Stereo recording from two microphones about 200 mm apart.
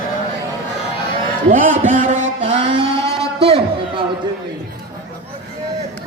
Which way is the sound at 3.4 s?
30° right (ahead or behind).